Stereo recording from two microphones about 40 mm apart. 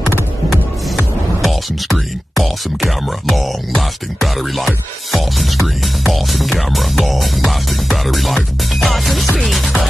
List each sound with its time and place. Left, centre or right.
0.5 s speech: centre
8.7 s music: centre